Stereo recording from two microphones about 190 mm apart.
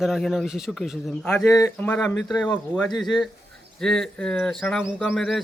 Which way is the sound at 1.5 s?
20° left (ahead or behind).